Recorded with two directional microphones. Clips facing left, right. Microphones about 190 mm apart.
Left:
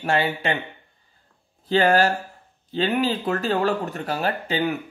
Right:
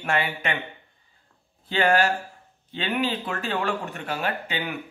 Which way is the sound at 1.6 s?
40° left (ahead or behind).